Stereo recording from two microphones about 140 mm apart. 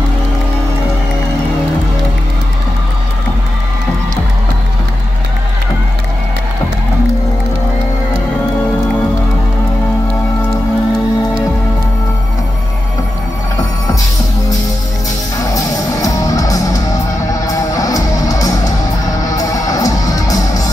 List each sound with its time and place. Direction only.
15.5 s music: 25° left (ahead or behind)